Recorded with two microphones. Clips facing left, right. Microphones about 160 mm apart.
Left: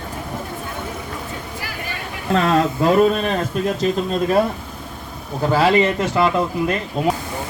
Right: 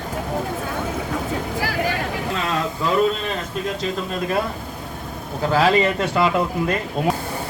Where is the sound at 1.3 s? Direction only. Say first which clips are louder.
Right 6 dB; 90° right.